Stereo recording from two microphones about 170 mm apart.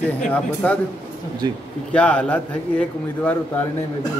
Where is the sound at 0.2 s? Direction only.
5° left (ahead or behind).